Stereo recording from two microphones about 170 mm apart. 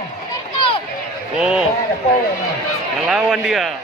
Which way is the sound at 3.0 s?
Centre (ahead or behind).